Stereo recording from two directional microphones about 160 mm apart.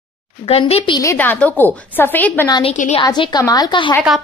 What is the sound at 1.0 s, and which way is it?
A woman's voice, 10° left (ahead or behind).